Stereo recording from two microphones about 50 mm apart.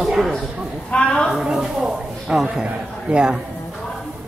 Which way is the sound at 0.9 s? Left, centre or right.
Centre.